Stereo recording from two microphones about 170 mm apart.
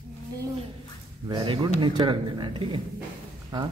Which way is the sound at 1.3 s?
30° right (ahead or behind).